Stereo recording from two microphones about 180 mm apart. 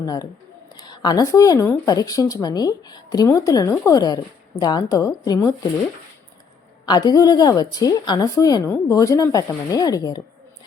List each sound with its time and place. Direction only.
0.0 s speech: 20° left (ahead or behind)
6.8 s speech: 20° left (ahead or behind)